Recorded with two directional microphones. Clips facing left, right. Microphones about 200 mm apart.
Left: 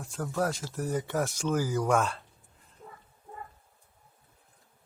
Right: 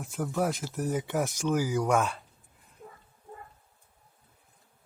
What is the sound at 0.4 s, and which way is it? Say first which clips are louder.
Speech: right 2 dB; 15° right (ahead or behind).